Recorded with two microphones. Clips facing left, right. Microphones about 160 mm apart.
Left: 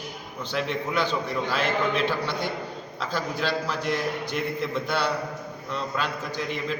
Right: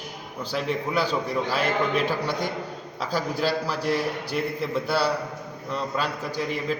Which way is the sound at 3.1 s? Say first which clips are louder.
Right 3 dB; 40° right (ahead or behind).